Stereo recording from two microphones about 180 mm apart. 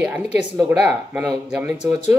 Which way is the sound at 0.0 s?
10° right (ahead or behind).